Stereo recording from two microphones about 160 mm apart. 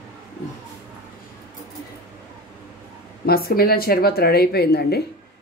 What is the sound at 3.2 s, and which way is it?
Speech, 70° left (ahead or behind).